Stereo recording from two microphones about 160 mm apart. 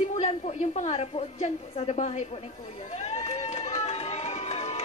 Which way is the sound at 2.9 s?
45° left (ahead or behind).